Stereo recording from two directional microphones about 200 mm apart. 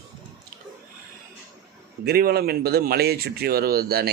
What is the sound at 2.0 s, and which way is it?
Speech, 50° right (ahead or behind).